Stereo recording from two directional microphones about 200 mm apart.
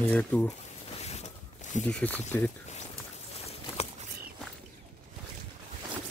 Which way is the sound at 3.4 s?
30° left (ahead or behind).